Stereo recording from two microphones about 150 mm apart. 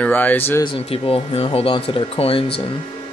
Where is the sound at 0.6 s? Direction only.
35° left (ahead or behind).